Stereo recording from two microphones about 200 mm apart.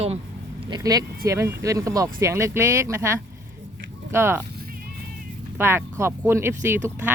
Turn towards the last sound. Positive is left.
turn(degrees=-15)  # may be behind; listen again after turning